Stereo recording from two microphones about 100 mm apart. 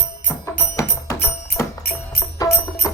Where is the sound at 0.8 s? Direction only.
30° left (ahead or behind).